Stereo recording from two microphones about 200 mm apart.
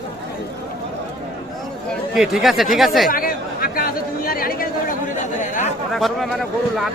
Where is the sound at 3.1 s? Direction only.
45° left (ahead or behind).